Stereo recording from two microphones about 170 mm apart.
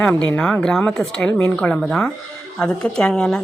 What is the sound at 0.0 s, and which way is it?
A woman's voice, 5° left (ahead or behind).